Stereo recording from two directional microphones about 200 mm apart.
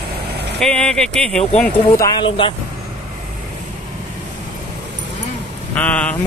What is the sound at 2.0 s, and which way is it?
Speech, 25° left (ahead or behind).